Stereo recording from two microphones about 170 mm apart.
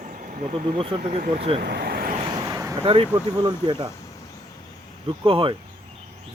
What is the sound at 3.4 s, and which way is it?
Speech, 25° right (ahead or behind).